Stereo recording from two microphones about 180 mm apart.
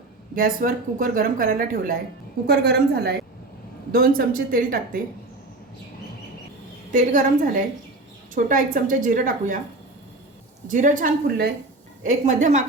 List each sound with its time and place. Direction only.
0.3 s speech: 50° right (ahead or behind)
2.5 s a woman's voice: 65° right (ahead or behind)
6.9 s speech: 45° right (ahead or behind)
10.7 s a woman's voice: 45° right (ahead or behind)